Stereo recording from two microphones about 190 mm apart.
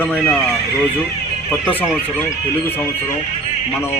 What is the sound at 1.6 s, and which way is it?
Speech, 5° left (ahead or behind).